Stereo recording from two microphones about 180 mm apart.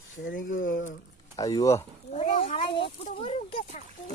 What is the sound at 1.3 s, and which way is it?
Speech, 20° left (ahead or behind).